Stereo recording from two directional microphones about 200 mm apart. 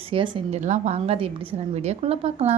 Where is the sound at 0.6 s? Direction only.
35° right (ahead or behind).